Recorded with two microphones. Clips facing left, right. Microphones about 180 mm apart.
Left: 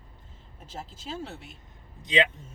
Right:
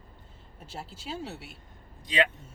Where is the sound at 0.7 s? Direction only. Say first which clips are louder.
Even; 10° right (ahead or behind).